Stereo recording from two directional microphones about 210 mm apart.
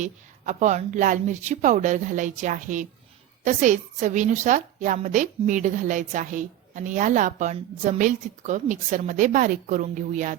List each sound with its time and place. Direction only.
0.0 s a woman's voice: 35° right (ahead or behind)